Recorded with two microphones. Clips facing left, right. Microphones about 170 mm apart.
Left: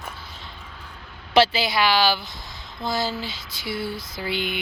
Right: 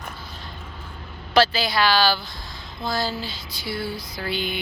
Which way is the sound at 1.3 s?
25° left (ahead or behind).